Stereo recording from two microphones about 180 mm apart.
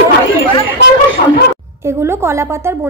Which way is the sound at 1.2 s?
45° left (ahead or behind).